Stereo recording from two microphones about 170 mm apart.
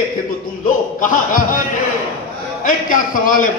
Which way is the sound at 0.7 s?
50° left (ahead or behind).